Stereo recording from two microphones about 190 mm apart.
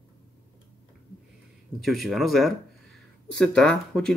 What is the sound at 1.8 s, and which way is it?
Speech, centre (ahead or behind).